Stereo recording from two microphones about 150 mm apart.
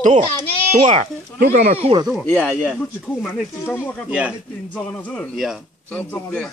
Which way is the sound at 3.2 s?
15° left (ahead or behind).